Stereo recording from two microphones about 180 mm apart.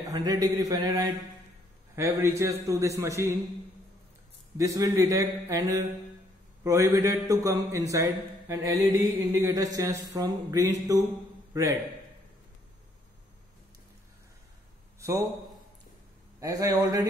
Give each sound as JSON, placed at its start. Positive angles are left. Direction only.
{"t": 0.1, "sound": "a man's voice", "side_deg": -20}
{"t": 4.6, "sound": "a man's voice", "side_deg": -20}
{"t": 15.0, "sound": "a sound", "side_deg": -15}
{"t": 16.3, "sound": "speech", "side_deg": -20}